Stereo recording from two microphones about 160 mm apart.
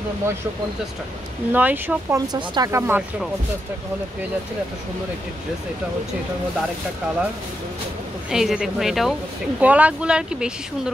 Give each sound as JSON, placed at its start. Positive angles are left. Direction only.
{"t": 1.5, "sound": "speech", "side_deg": -10}
{"t": 2.3, "sound": "speech", "side_deg": -25}
{"t": 8.3, "sound": "speech", "side_deg": -5}